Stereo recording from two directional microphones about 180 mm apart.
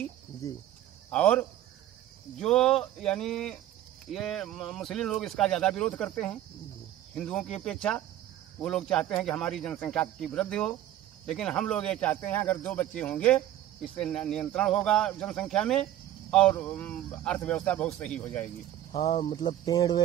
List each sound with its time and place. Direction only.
1.1 s speech: 5° left (ahead or behind)
19.0 s speech: 25° left (ahead or behind)